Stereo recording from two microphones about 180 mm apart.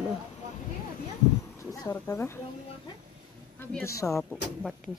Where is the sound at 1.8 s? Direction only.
15° left (ahead or behind).